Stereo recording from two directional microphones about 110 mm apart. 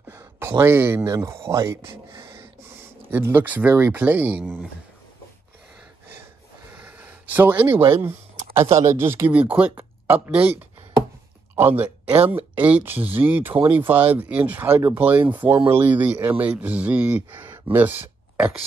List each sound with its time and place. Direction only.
0.1 s speech: 25° right (ahead or behind)
6.8 s gasp: 15° right (ahead or behind)
8.7 s speech: 25° right (ahead or behind)